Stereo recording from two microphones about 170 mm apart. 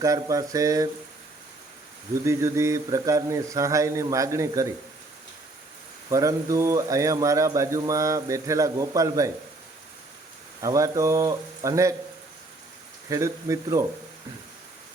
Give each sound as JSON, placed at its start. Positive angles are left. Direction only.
{"t": 0.0, "sound": "speech", "side_deg": -20}
{"t": 2.2, "sound": "mantra", "side_deg": -15}
{"t": 6.1, "sound": "speech", "side_deg": -20}
{"t": 10.6, "sound": "mantra", "side_deg": -20}
{"t": 13.1, "sound": "mantra", "side_deg": -20}